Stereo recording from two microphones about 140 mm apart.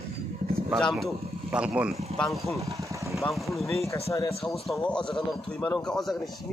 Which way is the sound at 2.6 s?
20° right (ahead or behind).